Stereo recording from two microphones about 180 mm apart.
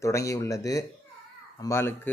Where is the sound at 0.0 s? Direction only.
15° left (ahead or behind).